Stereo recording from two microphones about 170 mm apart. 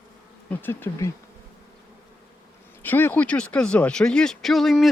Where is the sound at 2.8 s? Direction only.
10° left (ahead or behind).